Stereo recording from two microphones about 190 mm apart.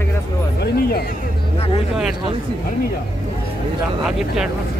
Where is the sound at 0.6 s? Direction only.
55° left (ahead or behind).